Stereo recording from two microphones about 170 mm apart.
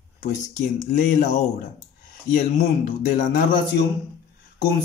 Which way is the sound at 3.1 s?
55° left (ahead or behind).